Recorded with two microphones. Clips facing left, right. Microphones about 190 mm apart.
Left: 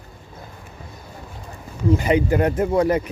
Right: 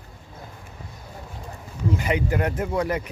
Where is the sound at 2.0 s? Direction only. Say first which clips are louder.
Left 5 dB; 30° left (ahead or behind).